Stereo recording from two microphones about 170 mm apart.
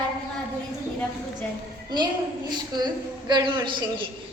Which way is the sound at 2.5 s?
25° right (ahead or behind).